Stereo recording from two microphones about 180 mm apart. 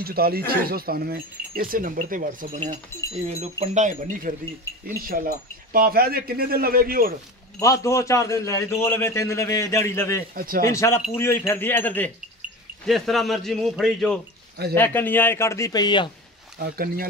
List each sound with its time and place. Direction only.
0.0 s speech: 55° right (ahead or behind)
3.3 s wind chime: 40° right (ahead or behind)
4.8 s speech: 55° right (ahead or behind)
7.5 s a man's voice: 15° left (ahead or behind)
10.3 s wind chime: 50° right (ahead or behind)
10.7 s a man's voice: 15° left (ahead or behind)
16.5 s speech: 60° right (ahead or behind)